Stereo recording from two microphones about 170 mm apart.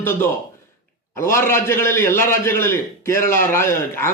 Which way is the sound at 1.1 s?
15° left (ahead or behind).